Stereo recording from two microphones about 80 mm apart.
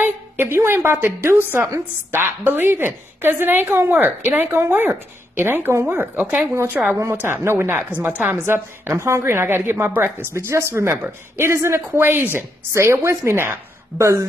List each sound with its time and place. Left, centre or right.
0.0 s a woman's voice: right; by 6.9 s centre
7.2 s a woman's voice: right